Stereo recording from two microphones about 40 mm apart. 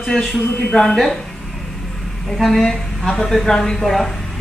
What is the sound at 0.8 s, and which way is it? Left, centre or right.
Speech, centre.